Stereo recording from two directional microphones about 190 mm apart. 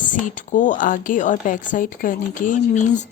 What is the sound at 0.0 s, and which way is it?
A woman's voice, 45° left (ahead or behind).